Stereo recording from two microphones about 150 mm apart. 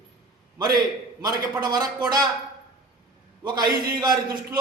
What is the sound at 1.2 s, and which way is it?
Speech, 25° right (ahead or behind).